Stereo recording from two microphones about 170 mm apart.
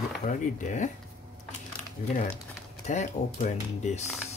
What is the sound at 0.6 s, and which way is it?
Speech, 45° left (ahead or behind).